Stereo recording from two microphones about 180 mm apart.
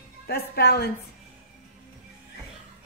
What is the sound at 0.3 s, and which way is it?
Speech, 60° left (ahead or behind).